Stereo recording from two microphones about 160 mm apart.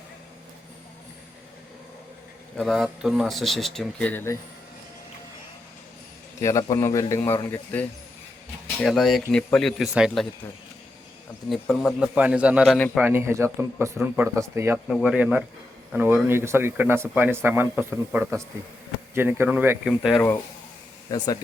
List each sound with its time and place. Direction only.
2.6 s speech: centre (ahead or behind)
6.4 s a man's voice: 20° left (ahead or behind)
8.8 s speech: centre (ahead or behind)
11.4 s speech: centre (ahead or behind)
12.7 s speech: 5° left (ahead or behind)
13.0 s speech: 15° right (ahead or behind)
14.8 s speech: 5° right (ahead or behind)
21.1 s a man's voice: 25° left (ahead or behind)